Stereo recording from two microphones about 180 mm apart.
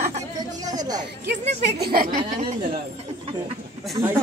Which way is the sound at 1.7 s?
60° right (ahead or behind).